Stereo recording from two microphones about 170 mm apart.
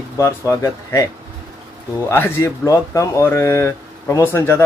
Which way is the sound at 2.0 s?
15° left (ahead or behind).